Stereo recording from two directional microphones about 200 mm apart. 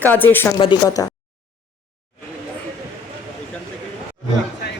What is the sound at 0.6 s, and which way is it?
Speech, 20° left (ahead or behind).